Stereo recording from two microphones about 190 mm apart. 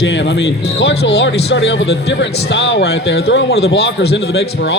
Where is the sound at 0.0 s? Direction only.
65° left (ahead or behind).